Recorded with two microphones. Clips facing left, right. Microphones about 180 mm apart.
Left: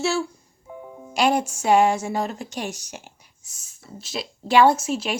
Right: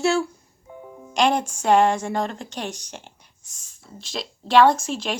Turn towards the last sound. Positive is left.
turn(degrees=5)  # may be behind; listen again after turning